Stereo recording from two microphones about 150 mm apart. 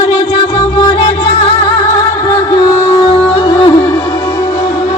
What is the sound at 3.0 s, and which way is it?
Music, 40° left (ahead or behind).